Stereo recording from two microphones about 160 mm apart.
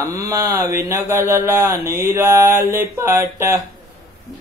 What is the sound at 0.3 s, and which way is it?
Speech, 20° right (ahead or behind).